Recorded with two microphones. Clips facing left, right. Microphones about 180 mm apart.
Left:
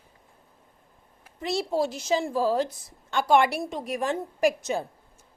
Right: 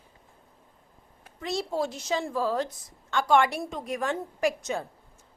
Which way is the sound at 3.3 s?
10° left (ahead or behind).